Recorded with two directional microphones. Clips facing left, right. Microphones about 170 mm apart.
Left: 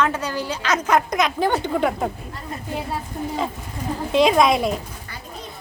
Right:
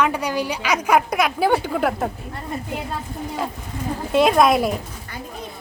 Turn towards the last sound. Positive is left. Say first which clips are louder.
# right 1 dB
turn(degrees=0)  # may be behind; listen again after turning